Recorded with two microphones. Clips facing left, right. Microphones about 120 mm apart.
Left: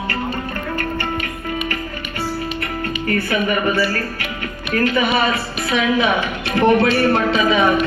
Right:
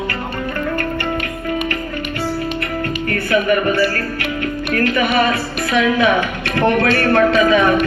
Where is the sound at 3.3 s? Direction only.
50° right (ahead or behind).